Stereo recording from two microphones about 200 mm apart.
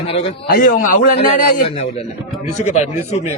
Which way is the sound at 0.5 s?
45° left (ahead or behind).